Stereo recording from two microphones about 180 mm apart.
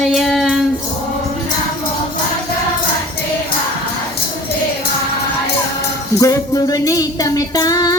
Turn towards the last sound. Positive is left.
turn(degrees=20)  # may be behind; listen again after turning